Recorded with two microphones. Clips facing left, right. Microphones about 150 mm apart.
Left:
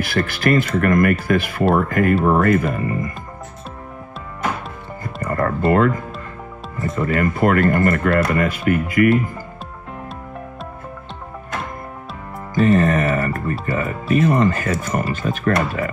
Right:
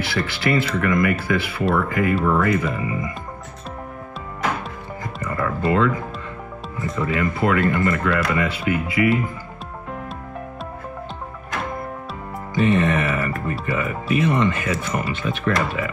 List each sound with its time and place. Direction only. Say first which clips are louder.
0.0 s speech: left 3 dB; 45° left (ahead or behind)
5.2 s speech: left 4 dB; 50° left (ahead or behind)
7.0 s speech: left 3 dB; 50° left (ahead or behind)
12.5 s speech: left 3 dB; 40° left (ahead or behind)